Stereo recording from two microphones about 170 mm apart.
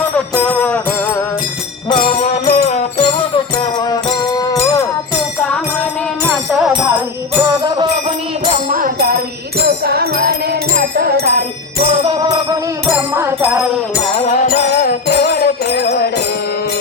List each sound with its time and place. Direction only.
0.4 s music: 10° left (ahead or behind)
2.5 s music: 40° left (ahead or behind)
3.6 s music: 25° left (ahead or behind)
5.5 s music: 5° left (ahead or behind)
7.4 s music: 20° right (ahead or behind)
8.7 s music: 60° right (ahead or behind)
11.9 s music: 30° right (ahead or behind)
13.1 s music: 15° right (ahead or behind)
14.4 s music: 65° left (ahead or behind)